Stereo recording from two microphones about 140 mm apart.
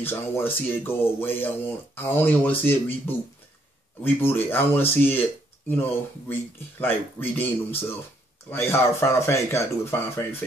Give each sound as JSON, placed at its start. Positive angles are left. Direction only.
{"t": 0.0, "sound": "speech", "side_deg": 15}
{"t": 8.5, "sound": "speech", "side_deg": 20}